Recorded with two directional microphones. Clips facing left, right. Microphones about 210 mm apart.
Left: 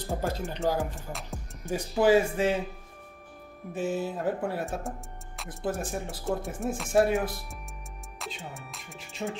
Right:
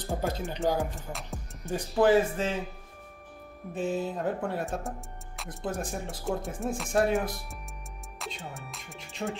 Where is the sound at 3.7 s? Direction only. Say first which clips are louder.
Even; 5° left (ahead or behind).